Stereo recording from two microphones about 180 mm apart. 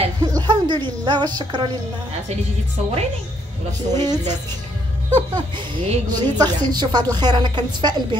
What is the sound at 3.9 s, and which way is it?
A woman's voice, 20° right (ahead or behind).